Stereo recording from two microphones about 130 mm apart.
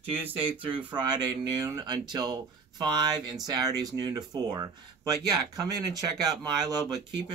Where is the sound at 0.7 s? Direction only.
35° right (ahead or behind).